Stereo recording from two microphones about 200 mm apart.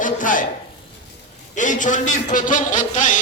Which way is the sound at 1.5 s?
40° left (ahead or behind).